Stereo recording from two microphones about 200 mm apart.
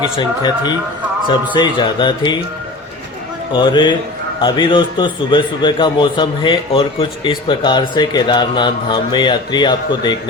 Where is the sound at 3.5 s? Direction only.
20° left (ahead or behind).